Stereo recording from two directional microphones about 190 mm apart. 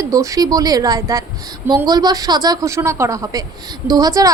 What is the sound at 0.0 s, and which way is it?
A woman's voice, 15° right (ahead or behind).